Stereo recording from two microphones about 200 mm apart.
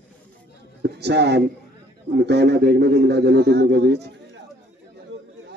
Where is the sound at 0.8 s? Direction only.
55° right (ahead or behind).